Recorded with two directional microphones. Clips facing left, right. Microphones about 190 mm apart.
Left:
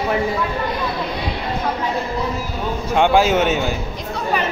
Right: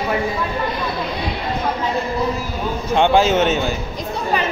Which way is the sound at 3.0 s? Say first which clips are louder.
Even; 10° left (ahead or behind).